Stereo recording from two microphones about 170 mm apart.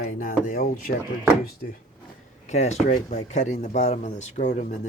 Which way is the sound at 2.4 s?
40° left (ahead or behind).